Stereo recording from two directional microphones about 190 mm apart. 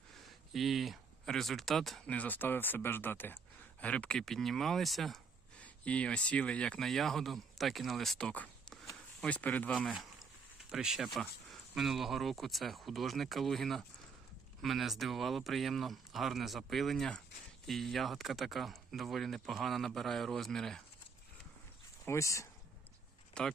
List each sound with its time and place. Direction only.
0.1 s speech: centre (ahead or behind)
22.0 s speech: 15° left (ahead or behind)
23.4 s speech: 5° left (ahead or behind)